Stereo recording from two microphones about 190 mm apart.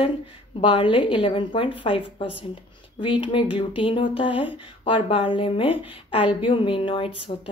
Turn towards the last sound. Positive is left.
turn(degrees=30)  # may be behind; listen again after turning